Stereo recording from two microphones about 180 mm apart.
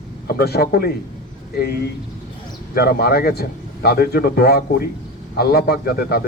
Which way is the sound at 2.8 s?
60° left (ahead or behind).